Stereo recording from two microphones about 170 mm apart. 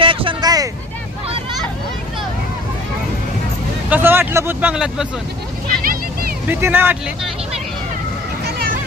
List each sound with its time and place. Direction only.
0.0 s a sound: 30° right (ahead or behind)
3.8 s speech: 10° right (ahead or behind)
5.8 s vehicle: 55° right (ahead or behind)
6.5 s speech: 10° right (ahead or behind)